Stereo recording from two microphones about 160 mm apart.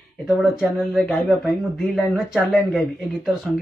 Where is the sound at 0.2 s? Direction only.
Centre (ahead or behind).